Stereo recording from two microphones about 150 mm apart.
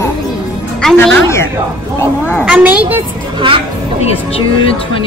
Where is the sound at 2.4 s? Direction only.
10° right (ahead or behind).